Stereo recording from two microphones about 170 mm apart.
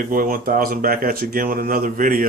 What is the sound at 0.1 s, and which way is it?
Speech, 55° right (ahead or behind).